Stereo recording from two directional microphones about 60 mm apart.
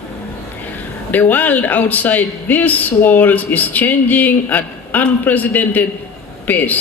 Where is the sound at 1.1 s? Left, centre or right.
Left.